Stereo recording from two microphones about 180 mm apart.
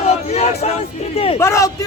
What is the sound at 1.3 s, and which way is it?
Speech, 15° left (ahead or behind).